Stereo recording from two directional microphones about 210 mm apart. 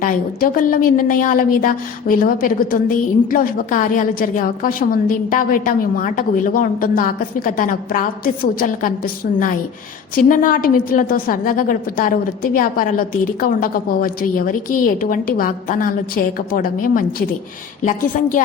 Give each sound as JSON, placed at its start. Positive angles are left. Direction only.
{"t": 0.0, "sound": "a woman's voice", "side_deg": 40}
{"t": 10.2, "sound": "a woman's voice", "side_deg": 40}